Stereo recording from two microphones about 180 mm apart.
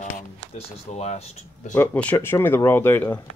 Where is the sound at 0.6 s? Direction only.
40° left (ahead or behind).